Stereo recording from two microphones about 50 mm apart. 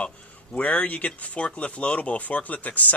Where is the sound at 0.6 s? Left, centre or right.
Left.